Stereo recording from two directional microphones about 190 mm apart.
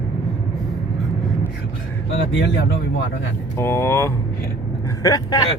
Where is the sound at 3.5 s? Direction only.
15° left (ahead or behind).